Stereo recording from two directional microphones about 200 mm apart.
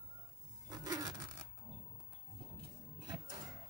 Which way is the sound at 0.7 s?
20° right (ahead or behind).